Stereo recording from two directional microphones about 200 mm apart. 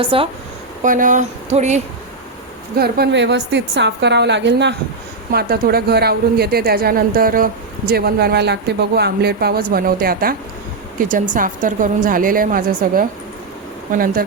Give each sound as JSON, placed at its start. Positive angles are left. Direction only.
{"t": 0.0, "sound": "a woman's voice", "side_deg": -25}
{"t": 0.8, "sound": "speech", "side_deg": -40}
{"t": 2.7, "sound": "a woman's voice", "side_deg": -50}